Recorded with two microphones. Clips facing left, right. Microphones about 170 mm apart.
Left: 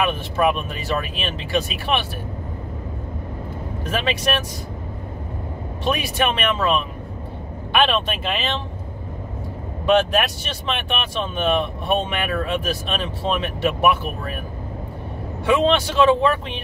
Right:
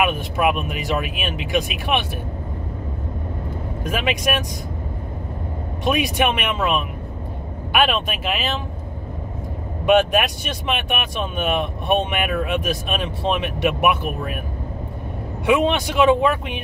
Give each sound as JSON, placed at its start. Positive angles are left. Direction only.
{"t": 0.0, "sound": "speech", "side_deg": -15}
{"t": 3.8, "sound": "speech", "side_deg": -15}
{"t": 5.9, "sound": "speech", "side_deg": -15}
{"t": 9.8, "sound": "speech", "side_deg": -15}
{"t": 15.4, "sound": "speech", "side_deg": -15}